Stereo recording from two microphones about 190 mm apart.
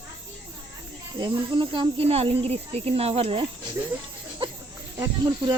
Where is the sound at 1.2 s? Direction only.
25° right (ahead or behind).